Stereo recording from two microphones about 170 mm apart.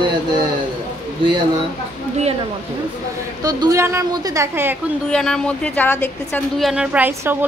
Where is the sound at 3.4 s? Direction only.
20° right (ahead or behind).